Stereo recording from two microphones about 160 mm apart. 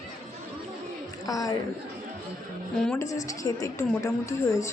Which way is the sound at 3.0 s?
20° left (ahead or behind).